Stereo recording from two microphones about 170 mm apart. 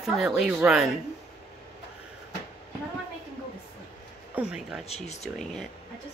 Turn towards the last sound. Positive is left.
turn(degrees=5)  # may be behind; listen again after turning